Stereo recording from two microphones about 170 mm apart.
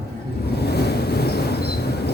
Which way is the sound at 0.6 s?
70° left (ahead or behind).